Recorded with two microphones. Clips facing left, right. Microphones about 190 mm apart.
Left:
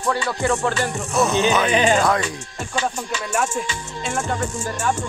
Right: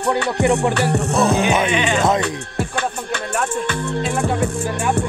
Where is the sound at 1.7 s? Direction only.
40° left (ahead or behind).